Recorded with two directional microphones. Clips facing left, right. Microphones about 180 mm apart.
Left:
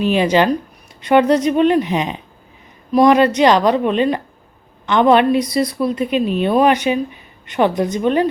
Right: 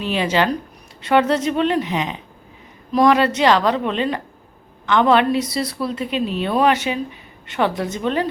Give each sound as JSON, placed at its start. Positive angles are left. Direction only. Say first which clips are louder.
{"t": 0.0, "sound": "a woman's voice", "louder": "left 5 dB", "side_deg": 15}